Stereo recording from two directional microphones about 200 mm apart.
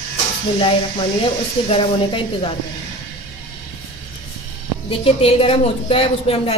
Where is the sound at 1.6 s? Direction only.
25° left (ahead or behind).